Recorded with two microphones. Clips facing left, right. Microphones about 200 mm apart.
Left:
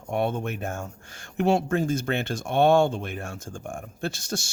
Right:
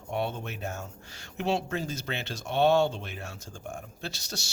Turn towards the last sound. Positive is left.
turn(degrees=50)  # may be behind; listen again after turning